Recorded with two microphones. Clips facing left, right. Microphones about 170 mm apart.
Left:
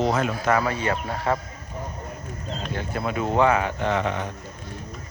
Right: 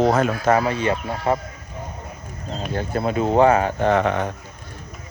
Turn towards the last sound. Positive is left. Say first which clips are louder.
# right 6 dB
turn(degrees=-55)  # may be behind; listen again after turning